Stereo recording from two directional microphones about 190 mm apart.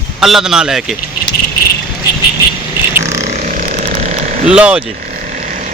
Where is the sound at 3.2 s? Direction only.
40° right (ahead or behind).